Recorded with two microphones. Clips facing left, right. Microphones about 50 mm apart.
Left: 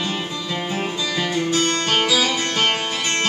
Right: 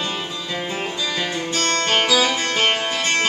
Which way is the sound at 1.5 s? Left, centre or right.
Centre.